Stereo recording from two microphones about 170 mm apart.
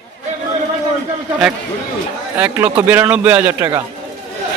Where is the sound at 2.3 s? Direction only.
10° right (ahead or behind).